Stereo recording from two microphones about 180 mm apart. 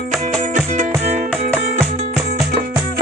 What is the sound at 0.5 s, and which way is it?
Music, 40° right (ahead or behind).